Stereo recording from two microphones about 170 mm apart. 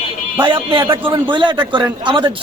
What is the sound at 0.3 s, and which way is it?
A man's voice, 25° right (ahead or behind).